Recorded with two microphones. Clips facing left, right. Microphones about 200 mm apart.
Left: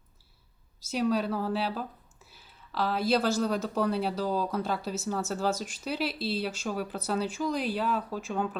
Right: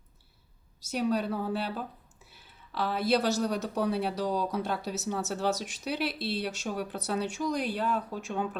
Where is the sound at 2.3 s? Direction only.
60° right (ahead or behind).